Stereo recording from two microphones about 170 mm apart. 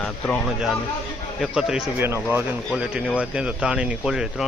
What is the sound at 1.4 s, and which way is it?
Speech, 5° right (ahead or behind).